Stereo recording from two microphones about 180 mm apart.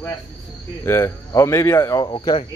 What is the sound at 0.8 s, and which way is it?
Speech, 15° left (ahead or behind).